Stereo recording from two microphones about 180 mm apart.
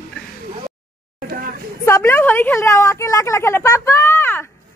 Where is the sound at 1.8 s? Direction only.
15° left (ahead or behind).